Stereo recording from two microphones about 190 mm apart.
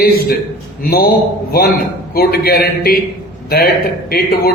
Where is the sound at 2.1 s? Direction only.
50° left (ahead or behind).